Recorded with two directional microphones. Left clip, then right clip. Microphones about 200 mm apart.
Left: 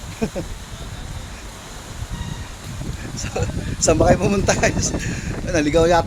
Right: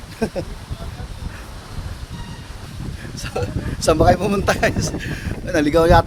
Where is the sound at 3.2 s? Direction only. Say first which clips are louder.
Right 1 dB; 15° right (ahead or behind).